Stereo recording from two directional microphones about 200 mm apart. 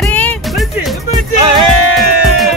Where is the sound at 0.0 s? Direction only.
10° left (ahead or behind).